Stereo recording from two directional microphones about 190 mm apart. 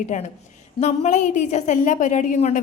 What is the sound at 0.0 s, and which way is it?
A woman's voice, 40° left (ahead or behind).